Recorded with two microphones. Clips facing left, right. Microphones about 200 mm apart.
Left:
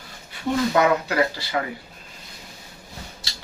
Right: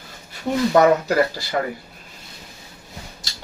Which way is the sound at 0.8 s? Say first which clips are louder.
Right 6 dB; 45° right (ahead or behind).